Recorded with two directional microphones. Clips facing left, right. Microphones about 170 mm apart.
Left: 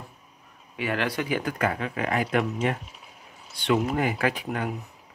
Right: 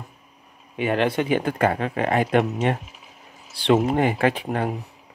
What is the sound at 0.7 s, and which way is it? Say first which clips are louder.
Speech: right 6 dB; 25° right (ahead or behind).